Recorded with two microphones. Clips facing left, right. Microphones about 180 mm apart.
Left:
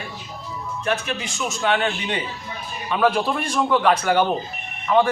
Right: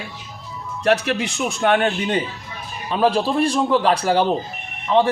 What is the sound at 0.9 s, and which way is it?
A man's voice, 75° right (ahead or behind).